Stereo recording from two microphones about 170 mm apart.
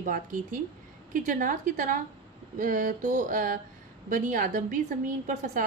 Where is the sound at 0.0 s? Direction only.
50° right (ahead or behind).